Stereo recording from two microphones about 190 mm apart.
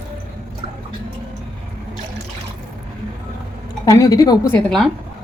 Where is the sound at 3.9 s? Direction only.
20° left (ahead or behind).